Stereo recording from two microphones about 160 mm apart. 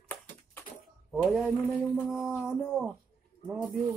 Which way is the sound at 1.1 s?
Centre (ahead or behind).